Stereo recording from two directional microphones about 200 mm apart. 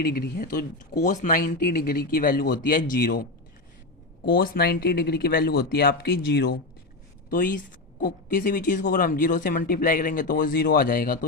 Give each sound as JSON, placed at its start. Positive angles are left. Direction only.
{"t": 0.0, "sound": "speech", "side_deg": 50}
{"t": 4.3, "sound": "speech", "side_deg": 45}